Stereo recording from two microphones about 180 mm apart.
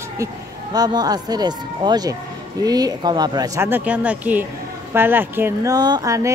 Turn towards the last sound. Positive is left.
turn(degrees=-15)  # may be behind; listen again after turning